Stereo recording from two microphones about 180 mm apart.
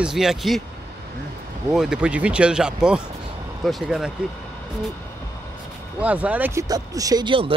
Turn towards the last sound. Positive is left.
turn(degrees=-30)  # may be behind; listen again after turning